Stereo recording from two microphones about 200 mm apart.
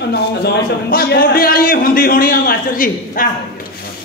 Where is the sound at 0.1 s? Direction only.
55° left (ahead or behind).